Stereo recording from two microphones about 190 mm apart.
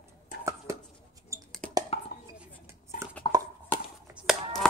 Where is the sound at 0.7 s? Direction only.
15° right (ahead or behind).